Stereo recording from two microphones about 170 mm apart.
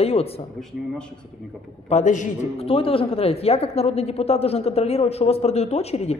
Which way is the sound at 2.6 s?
35° left (ahead or behind).